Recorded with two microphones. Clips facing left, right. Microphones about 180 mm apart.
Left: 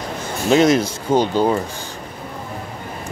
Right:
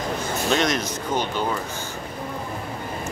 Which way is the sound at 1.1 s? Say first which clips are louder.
Left 9 dB; 30° left (ahead or behind).